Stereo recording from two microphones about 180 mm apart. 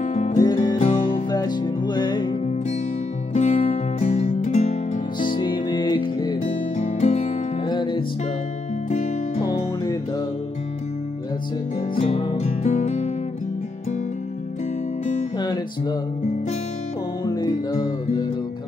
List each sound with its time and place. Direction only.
0.0 s music: 45° left (ahead or behind)
0.4 s music: 20° left (ahead or behind)
0.7 s music: 45° left (ahead or behind)
1.3 s music: 25° left (ahead or behind)
3.3 s music: 40° left (ahead or behind); by 6.4 s 25° left (ahead or behind)
6.8 s music: 40° left (ahead or behind)
7.7 s music: 25° left (ahead or behind)
8.9 s music: 40° left (ahead or behind)
12.0 s music: 30° left (ahead or behind)
15.3 s music: 25° left (ahead or behind)
17.2 s music: 20° left (ahead or behind)